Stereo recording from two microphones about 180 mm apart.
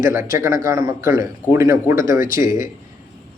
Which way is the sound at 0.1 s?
15° right (ahead or behind).